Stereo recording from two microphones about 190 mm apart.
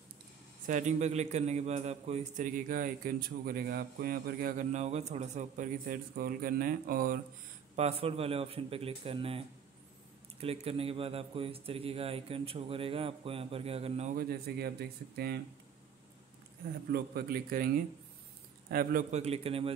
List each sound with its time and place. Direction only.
0.7 s a man's voice: 40° right (ahead or behind)
7.7 s a man's voice: 30° right (ahead or behind)
10.4 s a man's voice: 30° right (ahead or behind)
14.1 s speech: 55° right (ahead or behind)
16.9 s a man's voice: 55° right (ahead or behind); by 19.7 s 30° right (ahead or behind)